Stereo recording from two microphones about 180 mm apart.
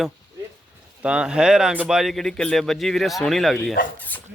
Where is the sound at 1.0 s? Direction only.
5° right (ahead or behind).